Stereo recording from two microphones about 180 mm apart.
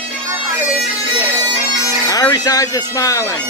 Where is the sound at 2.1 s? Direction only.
20° left (ahead or behind).